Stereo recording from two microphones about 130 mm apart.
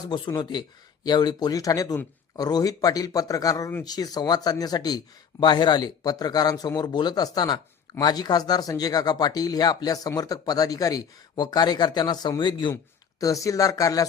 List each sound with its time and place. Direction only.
0.0 s speech: 30° left (ahead or behind)
12.7 s speech: 25° left (ahead or behind)